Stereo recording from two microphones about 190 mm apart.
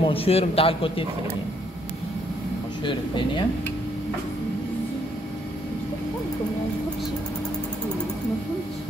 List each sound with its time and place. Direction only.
0.0 s a man's voice: 30° left (ahead or behind)
2.8 s a man's voice: 25° left (ahead or behind)